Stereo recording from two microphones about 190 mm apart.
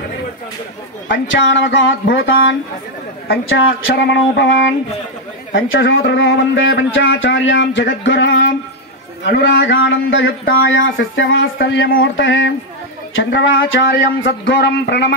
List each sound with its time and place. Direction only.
1.0 s a man's voice: 75° left (ahead or behind)
11.5 s a man's voice: 70° left (ahead or behind)